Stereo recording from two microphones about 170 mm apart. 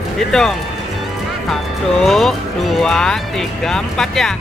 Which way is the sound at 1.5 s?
Centre (ahead or behind).